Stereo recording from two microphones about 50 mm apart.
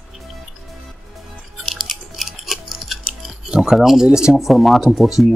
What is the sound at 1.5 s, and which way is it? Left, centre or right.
Music, centre.